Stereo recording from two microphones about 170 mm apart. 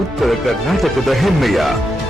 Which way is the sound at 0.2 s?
Centre (ahead or behind).